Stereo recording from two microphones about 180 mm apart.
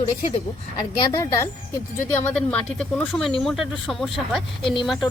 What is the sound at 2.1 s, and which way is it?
Speech, 5° left (ahead or behind).